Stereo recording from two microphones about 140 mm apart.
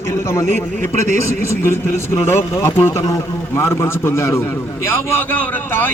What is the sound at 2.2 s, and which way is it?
A man's voice, 15° left (ahead or behind).